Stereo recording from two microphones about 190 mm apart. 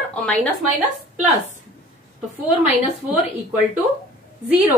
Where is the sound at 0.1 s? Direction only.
5° left (ahead or behind).